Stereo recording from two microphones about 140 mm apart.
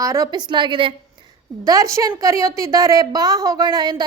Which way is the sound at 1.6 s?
25° right (ahead or behind).